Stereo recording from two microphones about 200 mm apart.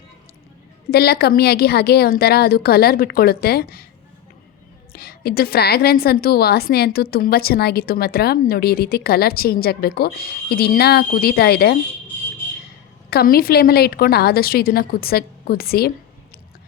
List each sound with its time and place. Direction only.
0.9 s a woman's voice: 50° left (ahead or behind)
4.9 s a woman's voice: 50° left (ahead or behind)
13.1 s a woman's voice: 50° left (ahead or behind)